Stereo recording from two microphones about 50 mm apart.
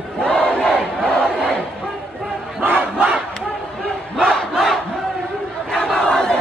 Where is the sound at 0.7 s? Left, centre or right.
Centre.